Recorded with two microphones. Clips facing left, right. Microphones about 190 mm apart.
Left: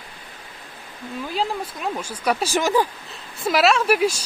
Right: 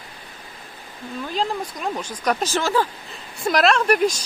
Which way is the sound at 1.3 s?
5° left (ahead or behind).